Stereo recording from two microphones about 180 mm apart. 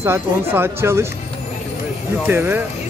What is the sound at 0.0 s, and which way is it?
Speech, 15° right (ahead or behind).